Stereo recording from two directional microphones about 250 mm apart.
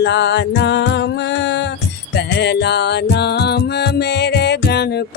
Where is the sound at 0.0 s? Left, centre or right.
Left.